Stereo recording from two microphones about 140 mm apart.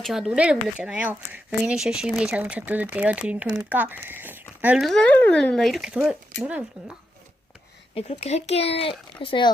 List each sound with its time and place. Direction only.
0.0 s speech: 5° right (ahead or behind)
4.8 s speech: 5° left (ahead or behind)
7.9 s speech: 50° left (ahead or behind); by 9.5 s 35° left (ahead or behind)